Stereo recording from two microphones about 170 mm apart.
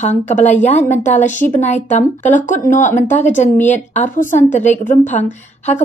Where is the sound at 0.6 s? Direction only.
45° left (ahead or behind).